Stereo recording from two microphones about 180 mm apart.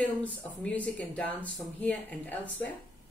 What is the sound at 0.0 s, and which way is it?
Speech, 10° left (ahead or behind).